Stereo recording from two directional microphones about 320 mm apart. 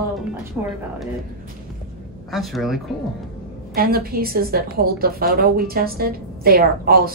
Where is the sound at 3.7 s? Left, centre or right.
Right.